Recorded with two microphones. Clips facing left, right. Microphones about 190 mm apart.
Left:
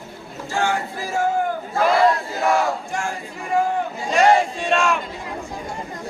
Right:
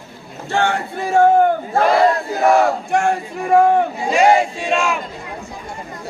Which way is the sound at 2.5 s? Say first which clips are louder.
Right 7 dB; 60° right (ahead or behind).